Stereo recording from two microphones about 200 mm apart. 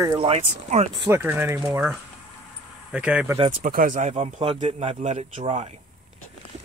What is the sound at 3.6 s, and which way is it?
Speech, 40° right (ahead or behind).